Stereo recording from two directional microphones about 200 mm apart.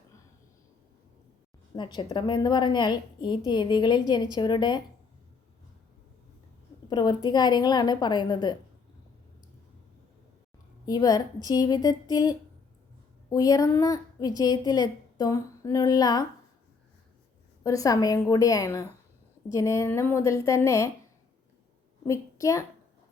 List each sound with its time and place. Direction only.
1.7 s a woman's voice: 20° left (ahead or behind)
6.9 s a woman's voice: 20° left (ahead or behind)
10.8 s a woman's voice: 20° left (ahead or behind)
13.3 s a woman's voice: 20° left (ahead or behind)
17.6 s a woman's voice: 15° left (ahead or behind)
22.0 s a woman's voice: 15° left (ahead or behind)